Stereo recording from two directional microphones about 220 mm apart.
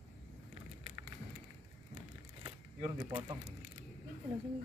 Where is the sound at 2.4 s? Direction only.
20° right (ahead or behind).